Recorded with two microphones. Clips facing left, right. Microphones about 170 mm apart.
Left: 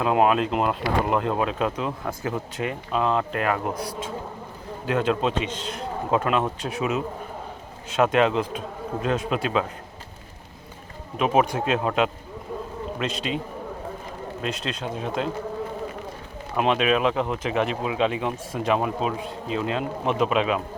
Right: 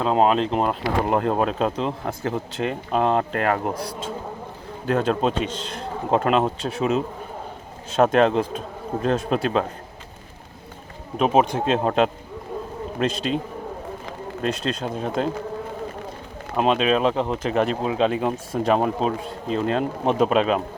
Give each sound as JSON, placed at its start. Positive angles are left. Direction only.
{"t": 0.0, "sound": "speech", "side_deg": -30}
{"t": 1.5, "sound": "speech", "side_deg": -30}
{"t": 2.9, "sound": "speech", "side_deg": -45}
{"t": 8.0, "sound": "speech", "side_deg": -40}
{"t": 11.2, "sound": "speech", "side_deg": -30}
{"t": 14.4, "sound": "speech", "side_deg": -40}
{"t": 16.6, "sound": "speech", "side_deg": -30}